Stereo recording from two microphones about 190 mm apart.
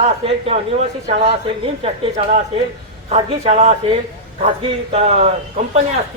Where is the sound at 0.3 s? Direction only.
30° right (ahead or behind).